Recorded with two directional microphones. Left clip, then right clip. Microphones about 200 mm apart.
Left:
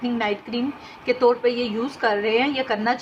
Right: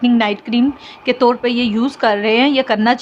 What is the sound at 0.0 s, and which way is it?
A woman's voice, 50° right (ahead or behind).